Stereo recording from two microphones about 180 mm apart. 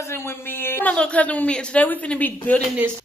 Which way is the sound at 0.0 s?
15° left (ahead or behind).